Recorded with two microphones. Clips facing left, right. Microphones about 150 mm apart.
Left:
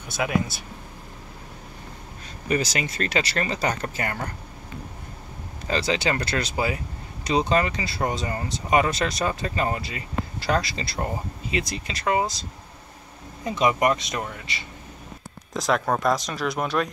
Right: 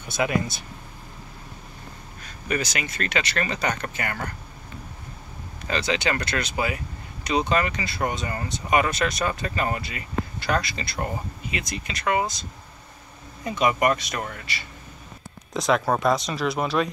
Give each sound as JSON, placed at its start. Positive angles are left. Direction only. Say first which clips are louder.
{"t": 0.1, "sound": "speech", "louder": "right 1 dB", "side_deg": 0}
{"t": 2.2, "sound": "speech", "louder": "left 3 dB", "side_deg": 30}
{"t": 5.7, "sound": "speech", "louder": "left 1 dB", "side_deg": 30}
{"t": 13.4, "sound": "speech", "louder": "left 1 dB", "side_deg": 25}
{"t": 15.5, "sound": "speech", "louder": "right 1 dB", "side_deg": 0}